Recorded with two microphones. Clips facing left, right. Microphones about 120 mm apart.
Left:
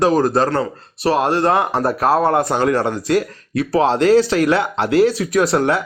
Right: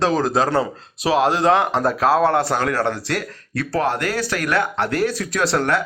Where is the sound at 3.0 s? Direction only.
70° right (ahead or behind).